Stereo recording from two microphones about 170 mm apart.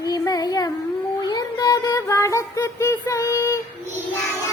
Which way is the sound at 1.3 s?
25° left (ahead or behind).